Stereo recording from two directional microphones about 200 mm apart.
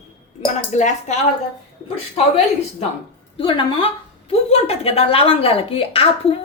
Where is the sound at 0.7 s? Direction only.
35° left (ahead or behind).